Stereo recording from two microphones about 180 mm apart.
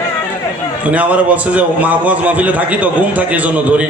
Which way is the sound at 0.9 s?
10° right (ahead or behind).